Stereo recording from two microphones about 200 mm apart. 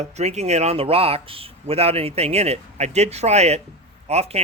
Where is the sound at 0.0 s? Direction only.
35° right (ahead or behind).